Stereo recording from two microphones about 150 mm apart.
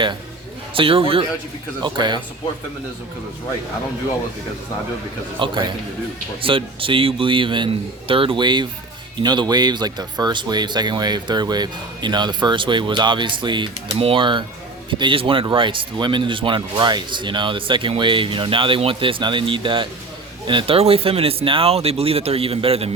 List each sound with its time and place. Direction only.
0.7 s speech: 35° right (ahead or behind)
5.4 s speech: 35° right (ahead or behind)